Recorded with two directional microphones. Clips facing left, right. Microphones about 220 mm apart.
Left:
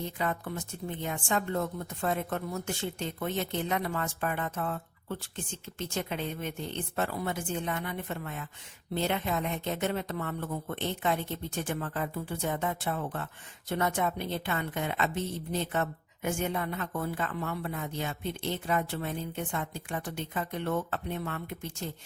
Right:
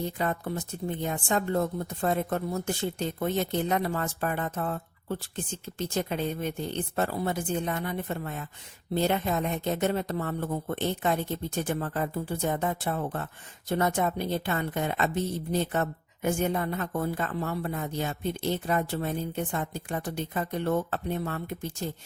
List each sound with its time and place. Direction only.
0.2 s a woman's voice: 35° right (ahead or behind)